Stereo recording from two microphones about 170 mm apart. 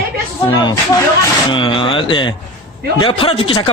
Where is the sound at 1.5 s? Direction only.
30° left (ahead or behind).